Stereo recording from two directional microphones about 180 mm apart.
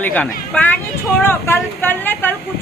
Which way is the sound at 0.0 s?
10° left (ahead or behind).